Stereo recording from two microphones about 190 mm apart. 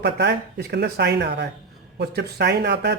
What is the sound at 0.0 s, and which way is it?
Speech, 60° right (ahead or behind).